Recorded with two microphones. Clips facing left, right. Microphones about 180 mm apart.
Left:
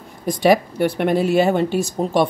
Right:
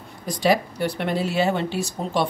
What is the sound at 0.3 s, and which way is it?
Speech, 55° left (ahead or behind).